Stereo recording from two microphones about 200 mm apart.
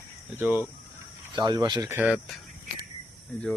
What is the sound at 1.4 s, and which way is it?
Speech, 20° right (ahead or behind).